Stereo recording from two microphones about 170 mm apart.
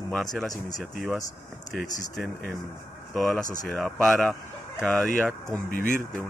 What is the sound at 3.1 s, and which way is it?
Speech, centre (ahead or behind).